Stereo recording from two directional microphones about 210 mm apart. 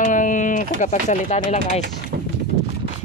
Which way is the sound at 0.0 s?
40° left (ahead or behind).